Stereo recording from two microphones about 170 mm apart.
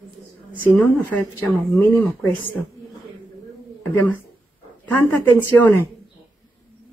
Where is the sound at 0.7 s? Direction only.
10° left (ahead or behind).